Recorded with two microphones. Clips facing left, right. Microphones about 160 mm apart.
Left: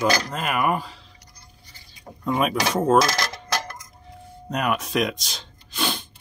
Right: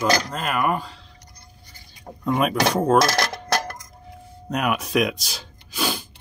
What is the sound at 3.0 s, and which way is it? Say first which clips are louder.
Cutlery: right 3 dB; 60° right (ahead or behind).